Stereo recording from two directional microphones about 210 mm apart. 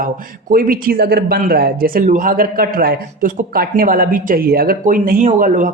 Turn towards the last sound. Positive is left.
turn(degrees=-35)  # may be behind; listen again after turning